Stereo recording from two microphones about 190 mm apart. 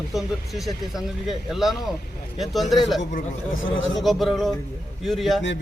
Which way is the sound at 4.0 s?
Centre (ahead or behind).